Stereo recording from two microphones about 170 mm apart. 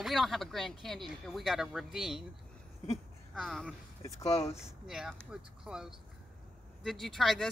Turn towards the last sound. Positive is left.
turn(degrees=0)  # may be behind; listen again after turning